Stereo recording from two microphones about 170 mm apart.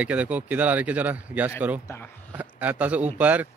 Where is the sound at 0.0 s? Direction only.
10° right (ahead or behind).